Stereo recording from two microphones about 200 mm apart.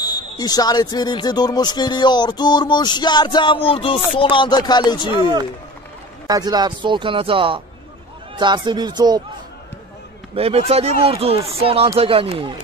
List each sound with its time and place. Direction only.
0.0 s speech: 20° left (ahead or behind)
6.2 s speech: 20° right (ahead or behind)
10.3 s speech: 30° right (ahead or behind)